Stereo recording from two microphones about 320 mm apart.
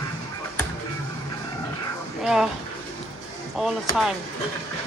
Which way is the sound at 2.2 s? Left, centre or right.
Centre.